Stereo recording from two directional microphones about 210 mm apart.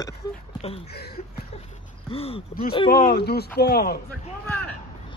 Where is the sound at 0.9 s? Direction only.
50° left (ahead or behind).